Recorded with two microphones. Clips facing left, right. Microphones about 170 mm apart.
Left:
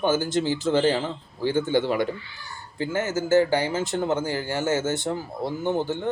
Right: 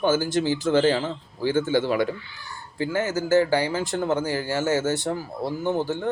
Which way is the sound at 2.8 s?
20° left (ahead or behind).